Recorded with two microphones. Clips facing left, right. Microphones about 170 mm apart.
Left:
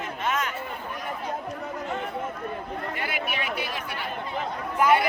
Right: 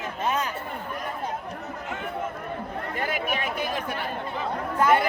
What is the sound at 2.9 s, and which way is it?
Speech, 45° right (ahead or behind).